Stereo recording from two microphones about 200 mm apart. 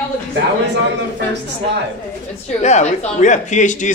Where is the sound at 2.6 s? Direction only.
35° left (ahead or behind).